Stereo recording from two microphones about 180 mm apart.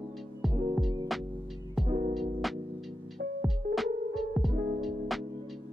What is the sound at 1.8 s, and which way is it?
Music, 40° right (ahead or behind).